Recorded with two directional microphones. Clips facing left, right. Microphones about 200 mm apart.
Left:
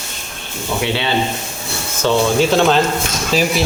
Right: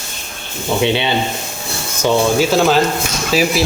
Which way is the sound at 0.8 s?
20° right (ahead or behind).